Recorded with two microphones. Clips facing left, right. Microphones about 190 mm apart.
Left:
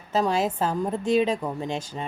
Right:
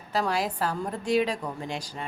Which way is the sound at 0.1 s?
20° left (ahead or behind).